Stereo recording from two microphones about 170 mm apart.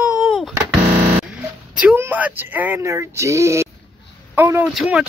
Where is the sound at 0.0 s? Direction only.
Centre (ahead or behind).